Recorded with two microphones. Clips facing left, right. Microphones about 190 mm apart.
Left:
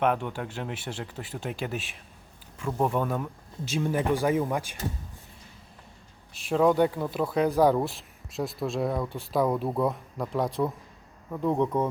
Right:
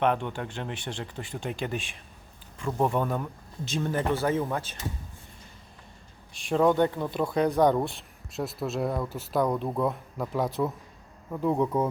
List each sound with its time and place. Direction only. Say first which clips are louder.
0.0 s speech: even; 5° left (ahead or behind)
6.3 s speech: even; 5° left (ahead or behind)